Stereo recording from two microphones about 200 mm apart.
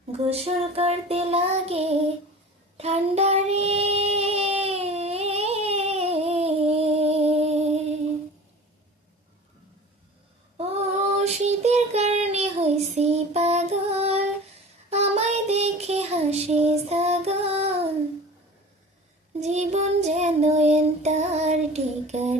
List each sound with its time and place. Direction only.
0.2 s child singing: 30° right (ahead or behind)
11.2 s child singing: 35° right (ahead or behind)
19.3 s child singing: 35° right (ahead or behind)